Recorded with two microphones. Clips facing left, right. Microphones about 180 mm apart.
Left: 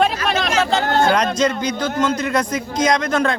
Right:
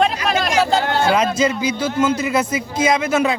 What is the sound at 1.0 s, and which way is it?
A man's voice, 5° right (ahead or behind).